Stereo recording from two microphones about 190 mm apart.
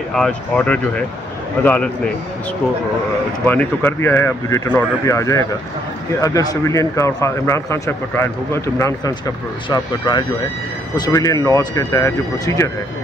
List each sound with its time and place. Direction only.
0.1 s speech: 5° left (ahead or behind)
3.4 s speech: 10° left (ahead or behind)